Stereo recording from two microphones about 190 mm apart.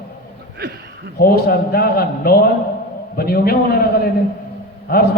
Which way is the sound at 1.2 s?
55° left (ahead or behind).